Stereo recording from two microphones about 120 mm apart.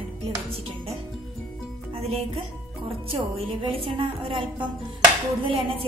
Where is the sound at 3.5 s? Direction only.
50° right (ahead or behind).